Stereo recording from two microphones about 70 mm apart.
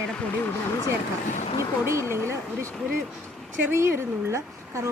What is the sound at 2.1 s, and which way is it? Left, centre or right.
Speech, right.